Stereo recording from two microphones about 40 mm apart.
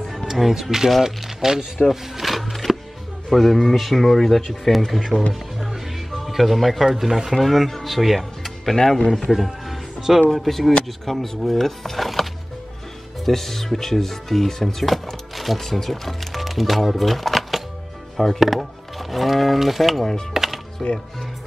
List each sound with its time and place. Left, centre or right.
0.3 s speech: centre
1.9 s music: centre
3.3 s speech: centre
6.9 s speech: centre
8.7 s speech: centre
9.3 s music: centre
10.3 s speech: centre
20.3 s music: centre